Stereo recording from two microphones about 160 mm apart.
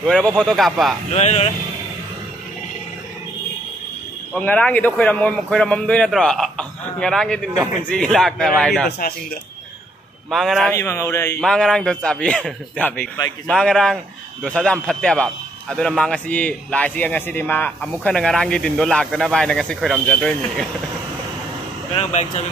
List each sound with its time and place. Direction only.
0.0 s a man's voice: 5° left (ahead or behind)
1.1 s speech: 45° left (ahead or behind)
4.3 s a man's voice: 10° left (ahead or behind)
10.3 s a man's voice: centre (ahead or behind)
10.7 s speech: 15° left (ahead or behind)
11.4 s a man's voice: 5° left (ahead or behind)
21.9 s speech: 45° left (ahead or behind)